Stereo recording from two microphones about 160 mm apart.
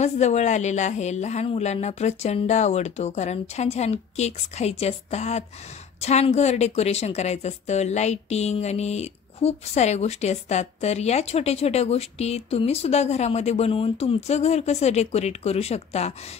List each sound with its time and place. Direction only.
0.0 s a woman's voice: 45° left (ahead or behind)